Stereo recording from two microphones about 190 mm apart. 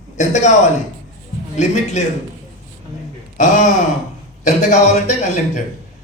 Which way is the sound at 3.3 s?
40° left (ahead or behind).